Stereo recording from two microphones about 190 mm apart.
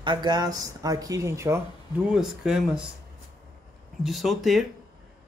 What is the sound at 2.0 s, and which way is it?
Speech, 5° right (ahead or behind).